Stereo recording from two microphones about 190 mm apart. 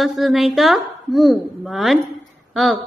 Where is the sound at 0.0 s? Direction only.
Centre (ahead or behind).